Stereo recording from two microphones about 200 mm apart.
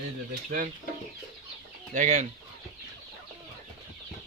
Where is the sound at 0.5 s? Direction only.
45° right (ahead or behind).